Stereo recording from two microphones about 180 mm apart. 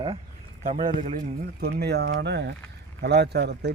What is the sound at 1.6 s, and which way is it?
Speech, 65° right (ahead or behind).